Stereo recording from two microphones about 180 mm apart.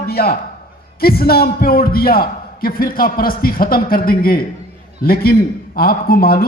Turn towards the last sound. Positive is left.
turn(degrees=55)  # may be behind; listen again after turning